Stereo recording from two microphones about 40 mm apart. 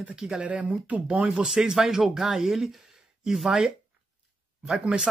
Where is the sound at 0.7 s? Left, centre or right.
Right.